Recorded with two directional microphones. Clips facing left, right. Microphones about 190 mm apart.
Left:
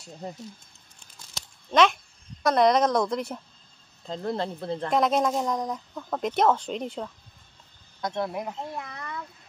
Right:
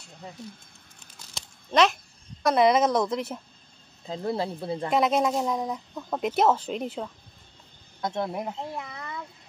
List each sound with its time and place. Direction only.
0.9 s crumpling: centre (ahead or behind)
2.4 s speech: 5° right (ahead or behind)
8.0 s speech: 25° right (ahead or behind)
8.7 s speech: 5° right (ahead or behind)
9.0 s a sound: 15° right (ahead or behind)